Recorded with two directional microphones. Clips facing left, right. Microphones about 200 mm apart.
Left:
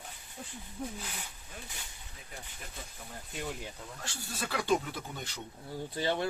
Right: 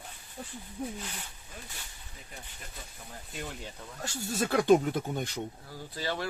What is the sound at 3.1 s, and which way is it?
Speech, centre (ahead or behind).